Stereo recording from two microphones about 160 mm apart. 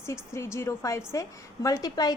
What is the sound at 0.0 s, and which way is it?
A woman's voice, 15° left (ahead or behind).